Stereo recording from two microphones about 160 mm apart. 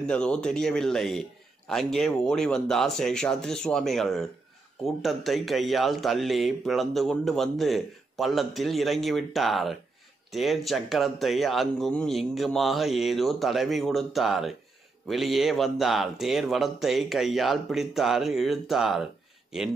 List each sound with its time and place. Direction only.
0.0 s speech: 5° left (ahead or behind)